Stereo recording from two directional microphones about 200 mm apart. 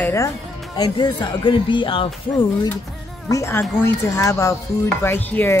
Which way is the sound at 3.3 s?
15° left (ahead or behind).